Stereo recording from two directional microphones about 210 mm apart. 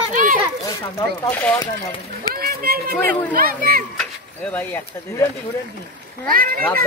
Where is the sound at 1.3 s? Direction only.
5° left (ahead or behind).